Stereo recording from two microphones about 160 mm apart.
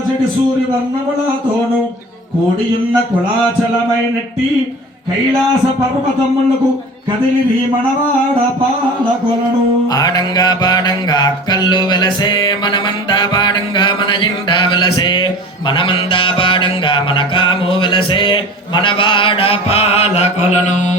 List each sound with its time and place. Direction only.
9.9 s music: 25° left (ahead or behind); by 20.7 s 40° left (ahead or behind)